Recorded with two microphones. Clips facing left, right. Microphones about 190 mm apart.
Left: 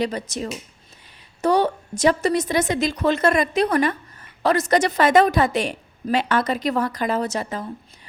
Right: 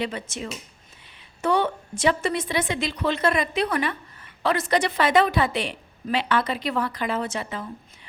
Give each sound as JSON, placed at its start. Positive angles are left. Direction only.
{"t": 0.0, "sound": "a woman's voice", "side_deg": 40}